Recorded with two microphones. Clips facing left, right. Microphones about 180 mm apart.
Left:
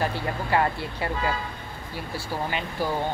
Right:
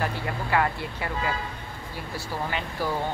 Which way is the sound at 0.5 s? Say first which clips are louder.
Left 1 dB; 30° left (ahead or behind).